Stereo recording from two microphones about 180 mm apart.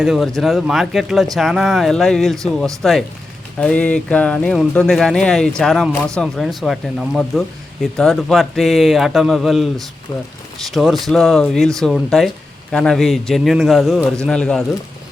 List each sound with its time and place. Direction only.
0.0 s speech: centre (ahead or behind)